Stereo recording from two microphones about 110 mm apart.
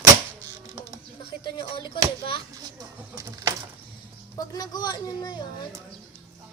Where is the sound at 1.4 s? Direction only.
50° left (ahead or behind).